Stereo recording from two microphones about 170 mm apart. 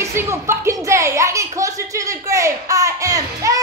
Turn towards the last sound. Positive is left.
turn(degrees=-20)  # may be behind; listen again after turning